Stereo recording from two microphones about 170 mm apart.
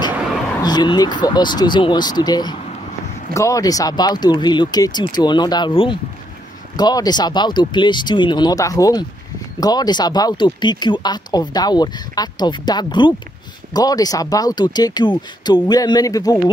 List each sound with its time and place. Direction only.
0.6 s speech: 25° left (ahead or behind)